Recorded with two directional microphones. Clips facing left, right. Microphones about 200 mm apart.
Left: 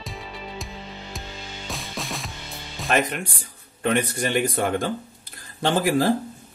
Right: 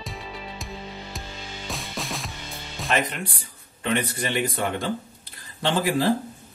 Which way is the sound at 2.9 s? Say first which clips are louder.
Left 3 dB; 45° left (ahead or behind).